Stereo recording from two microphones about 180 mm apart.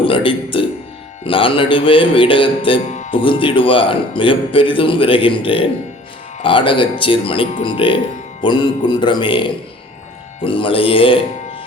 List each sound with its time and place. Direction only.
0.0 s a man's voice: 30° left (ahead or behind)